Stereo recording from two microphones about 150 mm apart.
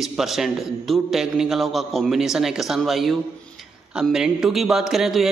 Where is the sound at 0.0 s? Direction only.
Centre (ahead or behind).